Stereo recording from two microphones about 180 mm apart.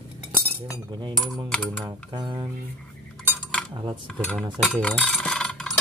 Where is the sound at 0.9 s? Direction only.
25° right (ahead or behind).